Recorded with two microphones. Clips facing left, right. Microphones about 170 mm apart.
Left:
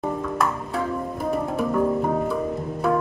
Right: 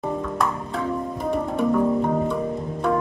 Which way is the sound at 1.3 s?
5° left (ahead or behind).